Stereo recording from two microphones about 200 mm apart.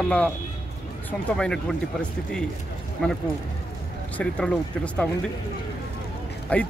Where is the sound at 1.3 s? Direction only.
5° left (ahead or behind).